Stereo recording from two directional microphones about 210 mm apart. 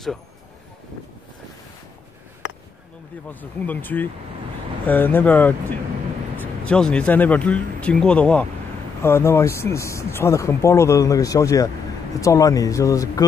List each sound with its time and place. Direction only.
3.3 s a man's voice: 10° left (ahead or behind)